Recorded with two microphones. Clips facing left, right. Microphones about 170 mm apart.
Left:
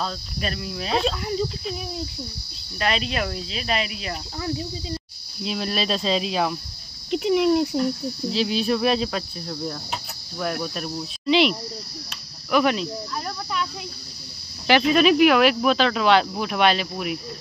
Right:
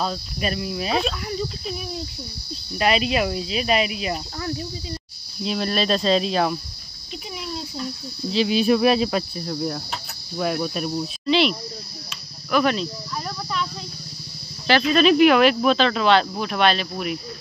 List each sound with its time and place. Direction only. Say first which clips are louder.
0.0 s speech: right 3 dB; 10° right (ahead or behind)
2.8 s speech: right 4 dB; 10° right (ahead or behind)
5.4 s speech: right 3 dB; centre (ahead or behind)
7.1 s speech: left 15 dB; 70° left (ahead or behind)
8.3 s speech: right 4 dB; centre (ahead or behind)
11.2 s speech: left 1 dB; 15° left (ahead or behind)
14.9 s speech: right 2 dB; 10° left (ahead or behind)